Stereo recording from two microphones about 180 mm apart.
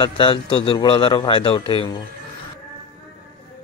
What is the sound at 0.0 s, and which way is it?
Speech, 25° left (ahead or behind).